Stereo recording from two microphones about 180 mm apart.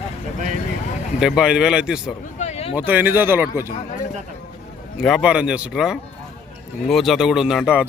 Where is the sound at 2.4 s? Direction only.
35° left (ahead or behind).